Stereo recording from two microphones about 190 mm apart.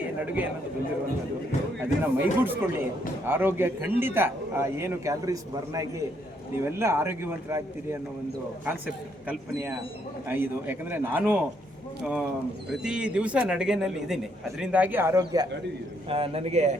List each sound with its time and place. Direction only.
1.8 s a man's voice: 10° right (ahead or behind)
9.2 s a man's voice: 10° right (ahead or behind)
12.8 s a man's voice: 5° right (ahead or behind); by 16.7 s 35° right (ahead or behind)